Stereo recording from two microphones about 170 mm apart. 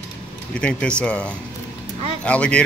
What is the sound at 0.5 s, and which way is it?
Speech, 5° left (ahead or behind).